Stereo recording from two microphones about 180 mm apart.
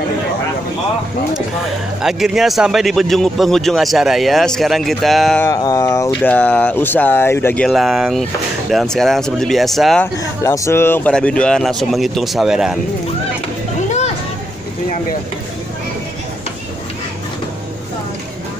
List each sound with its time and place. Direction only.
2.0 s speech: centre (ahead or behind)
5.4 s a sound: 20° left (ahead or behind)
6.3 s speech: 10° left (ahead or behind)
10.4 s speech: 15° left (ahead or behind); by 12.7 s 5° right (ahead or behind)